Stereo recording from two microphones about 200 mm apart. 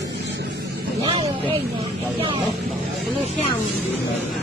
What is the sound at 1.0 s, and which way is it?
Speech, 25° right (ahead or behind).